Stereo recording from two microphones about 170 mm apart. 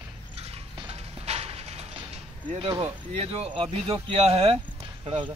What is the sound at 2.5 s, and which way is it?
Speech, 35° right (ahead or behind).